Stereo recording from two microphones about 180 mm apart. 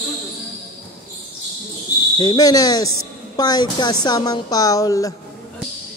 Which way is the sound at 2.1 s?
25° left (ahead or behind).